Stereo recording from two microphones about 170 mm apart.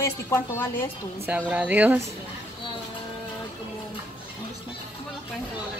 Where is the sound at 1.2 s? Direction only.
10° right (ahead or behind).